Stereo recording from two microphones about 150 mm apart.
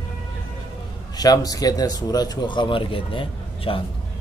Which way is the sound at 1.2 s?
25° left (ahead or behind).